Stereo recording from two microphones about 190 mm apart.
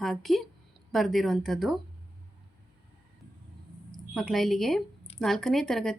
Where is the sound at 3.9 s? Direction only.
Centre (ahead or behind).